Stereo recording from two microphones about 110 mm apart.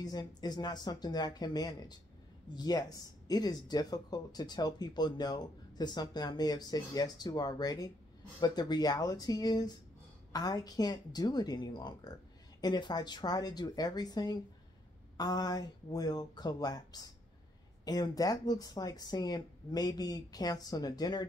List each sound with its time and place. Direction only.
0.0 s speech: 35° left (ahead or behind)